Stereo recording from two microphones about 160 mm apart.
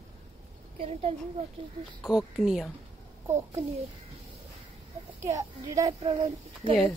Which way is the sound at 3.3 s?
15° right (ahead or behind).